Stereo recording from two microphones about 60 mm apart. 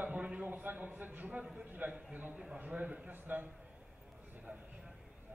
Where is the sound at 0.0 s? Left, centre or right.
Right.